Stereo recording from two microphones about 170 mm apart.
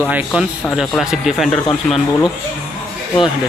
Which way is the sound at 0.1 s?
5° right (ahead or behind).